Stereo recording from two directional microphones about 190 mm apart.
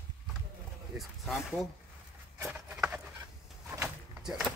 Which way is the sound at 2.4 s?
5° right (ahead or behind).